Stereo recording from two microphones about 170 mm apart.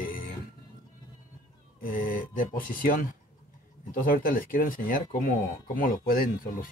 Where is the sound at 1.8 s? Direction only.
55° left (ahead or behind).